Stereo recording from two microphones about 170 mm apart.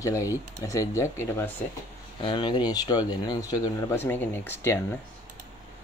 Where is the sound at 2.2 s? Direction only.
25° left (ahead or behind).